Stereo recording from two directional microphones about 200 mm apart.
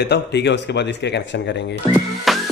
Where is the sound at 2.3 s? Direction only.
Centre (ahead or behind).